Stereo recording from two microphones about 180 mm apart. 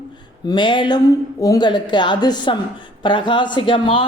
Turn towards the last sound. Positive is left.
turn(degrees=30)  # may be behind; listen again after turning